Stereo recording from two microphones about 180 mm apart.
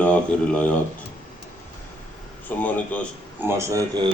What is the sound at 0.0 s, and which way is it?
Speech, 5° left (ahead or behind).